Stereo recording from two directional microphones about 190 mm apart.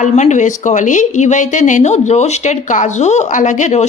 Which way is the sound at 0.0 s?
40° left (ahead or behind).